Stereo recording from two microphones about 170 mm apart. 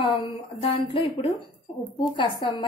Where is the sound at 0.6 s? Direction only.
30° left (ahead or behind).